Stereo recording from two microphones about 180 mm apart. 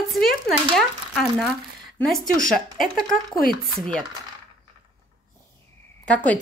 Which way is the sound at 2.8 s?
Centre (ahead or behind).